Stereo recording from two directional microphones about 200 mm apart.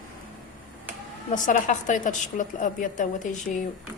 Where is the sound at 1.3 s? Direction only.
40° left (ahead or behind).